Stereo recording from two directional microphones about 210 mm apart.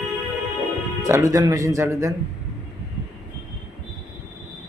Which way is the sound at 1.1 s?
15° right (ahead or behind).